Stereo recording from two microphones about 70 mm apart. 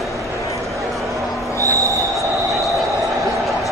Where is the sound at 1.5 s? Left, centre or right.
Right.